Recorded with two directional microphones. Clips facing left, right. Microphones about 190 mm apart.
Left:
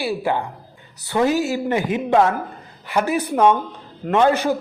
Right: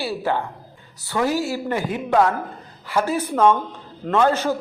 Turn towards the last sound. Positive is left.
turn(degrees=15)  # may be behind; listen again after turning